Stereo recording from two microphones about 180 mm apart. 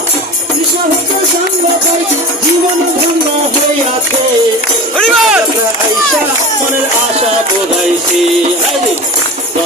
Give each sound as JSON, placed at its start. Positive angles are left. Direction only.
{"t": 4.9, "sound": "speech", "side_deg": 0}